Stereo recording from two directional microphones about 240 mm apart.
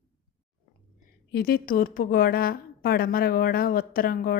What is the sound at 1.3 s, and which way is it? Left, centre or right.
A woman's voice, left.